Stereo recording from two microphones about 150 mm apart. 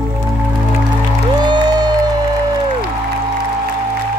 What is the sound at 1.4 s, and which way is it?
Music, 30° right (ahead or behind).